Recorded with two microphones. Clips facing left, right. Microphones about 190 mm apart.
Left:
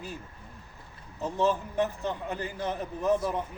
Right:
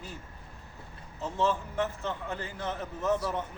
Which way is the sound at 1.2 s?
15° left (ahead or behind).